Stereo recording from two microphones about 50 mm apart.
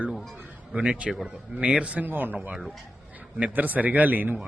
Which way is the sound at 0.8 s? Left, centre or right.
Centre.